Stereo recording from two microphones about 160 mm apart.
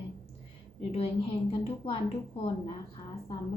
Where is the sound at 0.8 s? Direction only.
35° left (ahead or behind).